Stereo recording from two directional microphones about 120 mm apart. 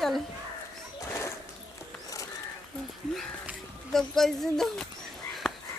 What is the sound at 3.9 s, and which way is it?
Speech, 5° left (ahead or behind).